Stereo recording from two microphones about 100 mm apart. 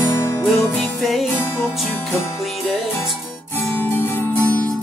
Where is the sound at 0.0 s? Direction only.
25° left (ahead or behind).